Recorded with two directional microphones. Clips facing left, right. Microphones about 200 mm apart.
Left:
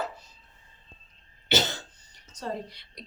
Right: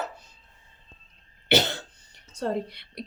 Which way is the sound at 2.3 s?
60° right (ahead or behind).